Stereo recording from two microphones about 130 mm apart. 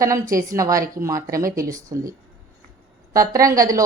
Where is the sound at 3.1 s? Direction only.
25° right (ahead or behind).